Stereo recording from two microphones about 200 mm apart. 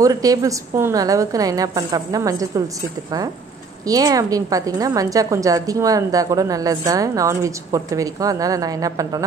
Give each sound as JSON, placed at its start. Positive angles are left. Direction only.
{"t": 0.0, "sound": "a woman's voice", "side_deg": -15}
{"t": 3.8, "sound": "a woman's voice", "side_deg": -20}